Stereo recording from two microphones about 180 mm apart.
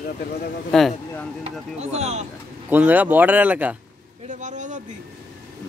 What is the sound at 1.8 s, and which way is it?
Speech, 40° right (ahead or behind).